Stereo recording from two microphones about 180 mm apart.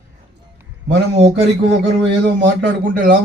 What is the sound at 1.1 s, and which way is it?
Mantra, 35° right (ahead or behind).